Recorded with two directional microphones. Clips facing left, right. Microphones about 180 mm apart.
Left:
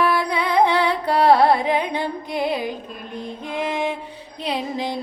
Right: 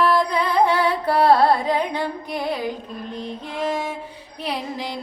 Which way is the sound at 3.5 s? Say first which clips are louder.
Left 2 dB; 15° left (ahead or behind).